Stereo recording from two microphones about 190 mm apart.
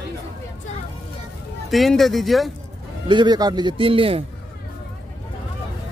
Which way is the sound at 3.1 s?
25° right (ahead or behind).